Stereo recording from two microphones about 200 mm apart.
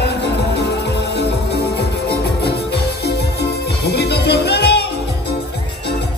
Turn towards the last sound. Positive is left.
turn(degrees=55)  # may be behind; listen again after turning